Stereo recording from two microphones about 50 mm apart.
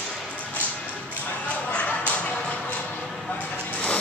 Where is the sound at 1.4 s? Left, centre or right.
Left.